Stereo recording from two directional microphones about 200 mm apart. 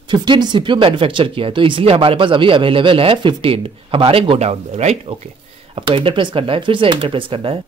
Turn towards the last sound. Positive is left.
turn(degrees=-25)  # may be behind; listen again after turning